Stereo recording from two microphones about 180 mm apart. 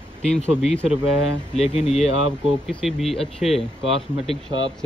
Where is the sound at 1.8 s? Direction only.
40° left (ahead or behind).